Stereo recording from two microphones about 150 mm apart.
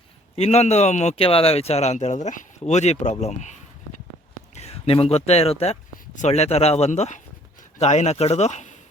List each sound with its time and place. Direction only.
0.3 s speech: 45° left (ahead or behind)